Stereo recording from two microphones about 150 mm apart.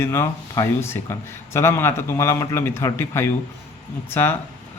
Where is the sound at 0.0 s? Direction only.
15° left (ahead or behind).